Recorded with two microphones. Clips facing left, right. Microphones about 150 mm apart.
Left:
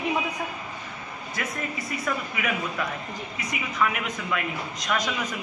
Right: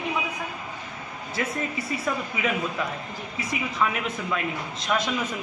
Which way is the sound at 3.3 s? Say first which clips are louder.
Right 1 dB; 25° right (ahead or behind).